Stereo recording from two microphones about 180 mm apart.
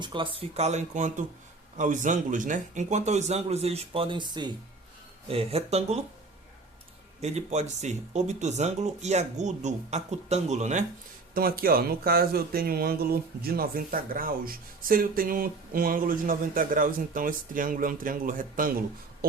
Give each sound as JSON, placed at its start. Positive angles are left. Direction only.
{"t": 0.0, "sound": "speech", "side_deg": -25}
{"t": 7.2, "sound": "speech", "side_deg": -40}
{"t": 11.3, "sound": "speech", "side_deg": -55}